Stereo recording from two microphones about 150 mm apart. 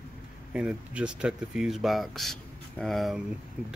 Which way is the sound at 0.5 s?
5° right (ahead or behind).